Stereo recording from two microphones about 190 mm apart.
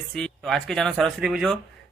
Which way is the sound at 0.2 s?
Centre (ahead or behind).